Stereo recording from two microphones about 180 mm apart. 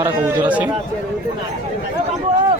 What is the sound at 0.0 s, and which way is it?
Speech, 10° right (ahead or behind).